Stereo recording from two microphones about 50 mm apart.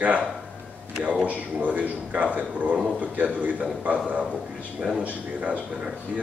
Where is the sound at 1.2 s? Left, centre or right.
Right.